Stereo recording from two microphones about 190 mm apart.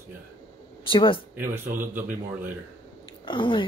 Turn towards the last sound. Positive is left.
turn(degrees=25)  # may be behind; listen again after turning